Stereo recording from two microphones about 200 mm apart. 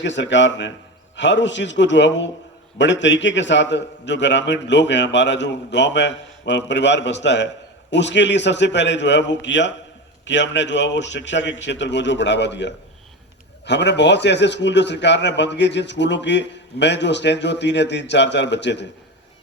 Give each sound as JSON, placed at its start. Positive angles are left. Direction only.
{"t": 0.0, "sound": "a man's voice", "side_deg": 65}